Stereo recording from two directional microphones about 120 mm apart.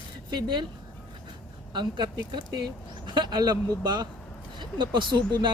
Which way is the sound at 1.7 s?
40° right (ahead or behind).